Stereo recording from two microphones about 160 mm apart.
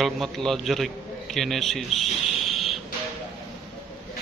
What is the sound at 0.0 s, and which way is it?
A man's voice, centre (ahead or behind).